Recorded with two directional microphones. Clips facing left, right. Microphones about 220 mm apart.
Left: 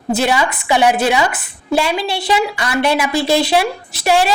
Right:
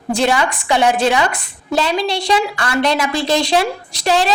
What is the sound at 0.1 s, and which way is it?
A woman's voice, 5° left (ahead or behind).